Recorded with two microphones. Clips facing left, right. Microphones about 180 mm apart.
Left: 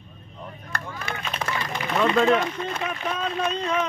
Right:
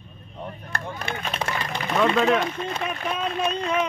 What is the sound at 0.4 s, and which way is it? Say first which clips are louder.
Chop: right 2 dB; 25° right (ahead or behind).